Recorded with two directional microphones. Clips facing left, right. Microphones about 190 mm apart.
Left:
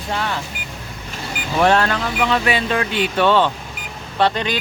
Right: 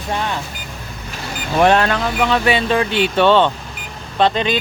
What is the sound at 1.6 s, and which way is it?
Speech, 20° right (ahead or behind).